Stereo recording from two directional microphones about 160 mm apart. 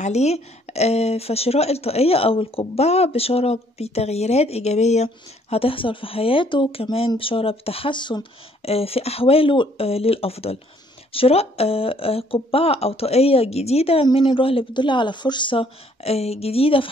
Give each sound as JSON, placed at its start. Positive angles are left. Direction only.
{"t": 0.0, "sound": "speech", "side_deg": 45}